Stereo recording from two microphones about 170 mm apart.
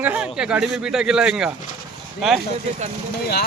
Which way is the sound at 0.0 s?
10° right (ahead or behind).